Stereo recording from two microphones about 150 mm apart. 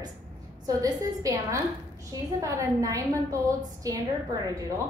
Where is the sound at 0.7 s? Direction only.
25° right (ahead or behind).